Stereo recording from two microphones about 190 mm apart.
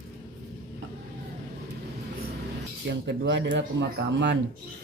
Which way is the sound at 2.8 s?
65° right (ahead or behind).